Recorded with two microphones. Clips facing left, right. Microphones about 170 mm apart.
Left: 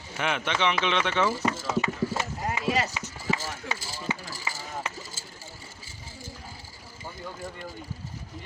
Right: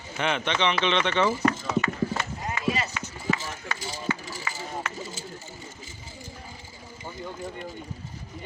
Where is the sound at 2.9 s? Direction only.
15° left (ahead or behind).